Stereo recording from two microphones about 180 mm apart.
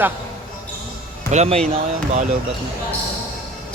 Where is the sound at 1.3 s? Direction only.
35° right (ahead or behind).